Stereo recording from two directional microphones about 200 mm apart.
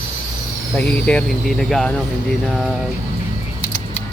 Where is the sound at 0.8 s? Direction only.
5° left (ahead or behind).